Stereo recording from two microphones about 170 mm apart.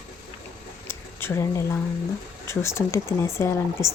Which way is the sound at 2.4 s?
15° left (ahead or behind).